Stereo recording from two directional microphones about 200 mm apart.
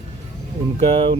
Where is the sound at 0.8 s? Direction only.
30° right (ahead or behind).